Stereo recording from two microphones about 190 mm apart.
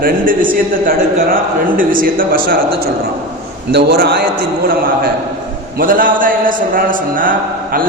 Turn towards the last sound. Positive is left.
turn(degrees=-45)  # may be behind; listen again after turning